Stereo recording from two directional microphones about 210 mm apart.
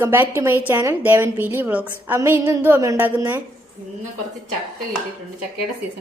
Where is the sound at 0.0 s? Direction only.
10° right (ahead or behind).